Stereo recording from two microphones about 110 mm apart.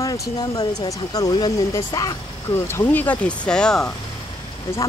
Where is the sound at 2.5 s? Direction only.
20° left (ahead or behind).